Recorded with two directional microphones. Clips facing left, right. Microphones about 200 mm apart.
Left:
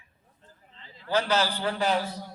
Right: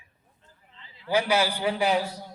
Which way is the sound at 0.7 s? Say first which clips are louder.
Left 2 dB; 45° left (ahead or behind).